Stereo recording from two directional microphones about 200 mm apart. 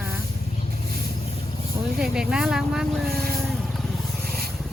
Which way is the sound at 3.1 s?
50° right (ahead or behind).